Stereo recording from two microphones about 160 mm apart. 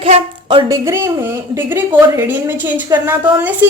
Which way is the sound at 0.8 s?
20° right (ahead or behind).